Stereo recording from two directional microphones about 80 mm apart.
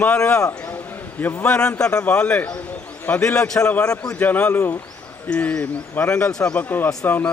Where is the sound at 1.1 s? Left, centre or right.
Left.